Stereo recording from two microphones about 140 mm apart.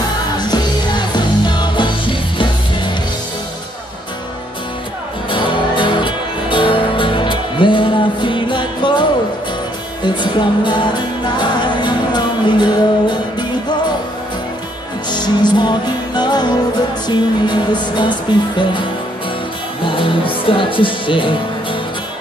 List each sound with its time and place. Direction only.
0.4 s music: 30° left (ahead or behind)
5.3 s music: 35° left (ahead or behind)
10.0 s music: 35° left (ahead or behind)
15.0 s music: 30° left (ahead or behind)
20.0 s speech: 40° left (ahead or behind)